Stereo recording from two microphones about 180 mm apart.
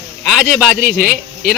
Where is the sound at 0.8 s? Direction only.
50° right (ahead or behind).